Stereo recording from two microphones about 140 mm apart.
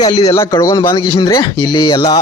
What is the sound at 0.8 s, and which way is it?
Speech, 90° left.